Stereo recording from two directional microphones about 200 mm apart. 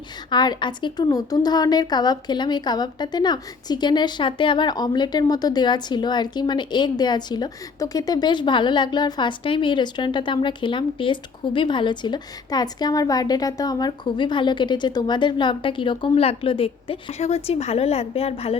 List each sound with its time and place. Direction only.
0.3 s a woman's voice: 20° left (ahead or behind)